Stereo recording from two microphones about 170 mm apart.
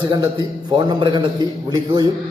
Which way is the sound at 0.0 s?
25° right (ahead or behind).